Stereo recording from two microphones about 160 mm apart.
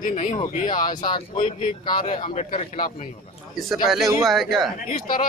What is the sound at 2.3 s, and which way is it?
Speech, 40° left (ahead or behind).